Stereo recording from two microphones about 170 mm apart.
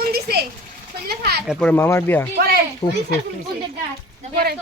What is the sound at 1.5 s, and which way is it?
Speech, 5° left (ahead or behind).